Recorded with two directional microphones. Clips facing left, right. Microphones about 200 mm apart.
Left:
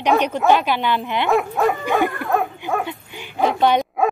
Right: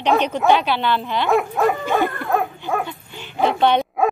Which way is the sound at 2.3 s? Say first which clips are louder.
Even; centre (ahead or behind).